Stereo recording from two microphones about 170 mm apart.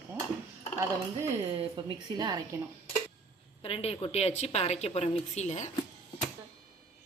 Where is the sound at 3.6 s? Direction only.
35° left (ahead or behind).